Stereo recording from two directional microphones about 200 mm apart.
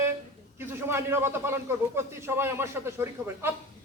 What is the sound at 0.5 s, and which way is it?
Speech, 10° right (ahead or behind).